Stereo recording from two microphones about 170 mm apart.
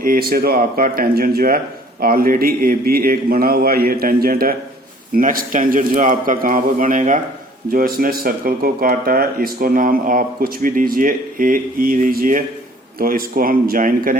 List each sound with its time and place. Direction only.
0.0 s a man's voice: 60° right (ahead or behind)